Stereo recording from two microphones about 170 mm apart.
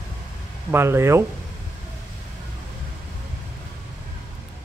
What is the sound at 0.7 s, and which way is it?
Speech, 15° right (ahead or behind).